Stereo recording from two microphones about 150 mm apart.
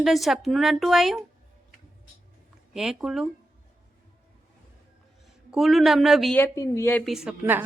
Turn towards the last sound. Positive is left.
turn(degrees=-10)  # may be behind; listen again after turning